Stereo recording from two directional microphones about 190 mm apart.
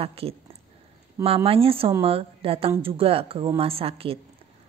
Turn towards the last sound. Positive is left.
turn(degrees=-30)  # may be behind; listen again after turning